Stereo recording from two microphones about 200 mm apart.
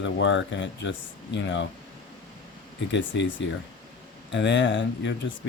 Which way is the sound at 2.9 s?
65° left (ahead or behind).